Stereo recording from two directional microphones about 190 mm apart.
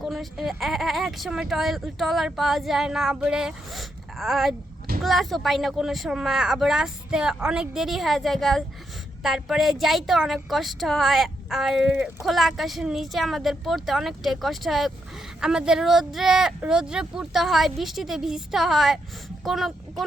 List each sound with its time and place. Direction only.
0.0 s speech: centre (ahead or behind)